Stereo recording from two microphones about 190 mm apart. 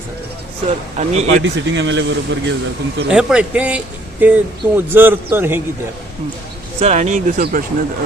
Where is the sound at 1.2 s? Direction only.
80° right.